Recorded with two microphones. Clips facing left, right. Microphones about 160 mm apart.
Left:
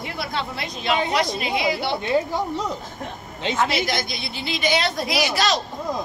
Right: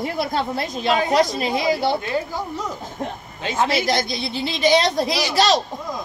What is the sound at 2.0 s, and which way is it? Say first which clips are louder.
Speech: left 3 dB; 25° left (ahead or behind).